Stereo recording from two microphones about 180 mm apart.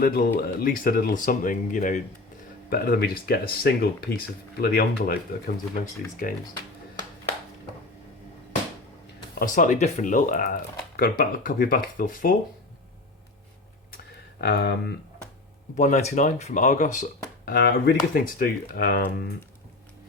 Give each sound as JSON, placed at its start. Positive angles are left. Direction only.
{"t": 0.0, "sound": "speech", "side_deg": 55}
{"t": 2.6, "sound": "speech", "side_deg": 60}
{"t": 9.3, "sound": "speech", "side_deg": 50}
{"t": 14.4, "sound": "speech", "side_deg": 60}
{"t": 15.7, "sound": "speech", "side_deg": 40}